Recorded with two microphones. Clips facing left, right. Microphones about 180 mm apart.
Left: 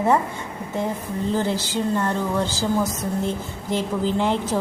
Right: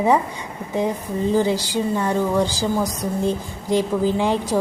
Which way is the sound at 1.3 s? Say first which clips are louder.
Right 4 dB; 15° right (ahead or behind).